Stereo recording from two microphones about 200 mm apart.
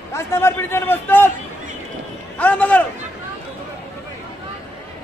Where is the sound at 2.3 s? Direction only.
5° left (ahead or behind).